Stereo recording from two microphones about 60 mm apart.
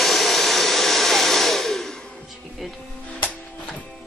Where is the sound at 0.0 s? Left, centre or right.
Centre.